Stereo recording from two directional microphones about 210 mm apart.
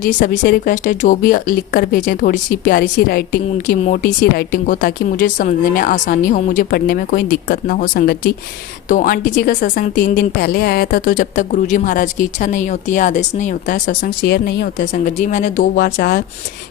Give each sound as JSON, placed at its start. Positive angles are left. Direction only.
{"t": 0.0, "sound": "a woman's voice", "side_deg": 45}